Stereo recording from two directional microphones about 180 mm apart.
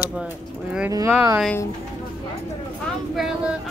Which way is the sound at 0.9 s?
20° right (ahead or behind).